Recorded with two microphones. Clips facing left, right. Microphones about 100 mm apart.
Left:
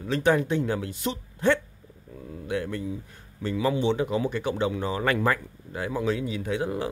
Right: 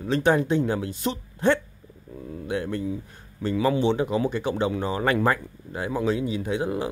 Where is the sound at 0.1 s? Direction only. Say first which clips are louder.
Right 2 dB; 30° right (ahead or behind).